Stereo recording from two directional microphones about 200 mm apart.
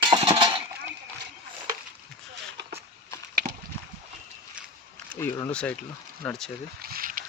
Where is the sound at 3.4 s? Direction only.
15° right (ahead or behind).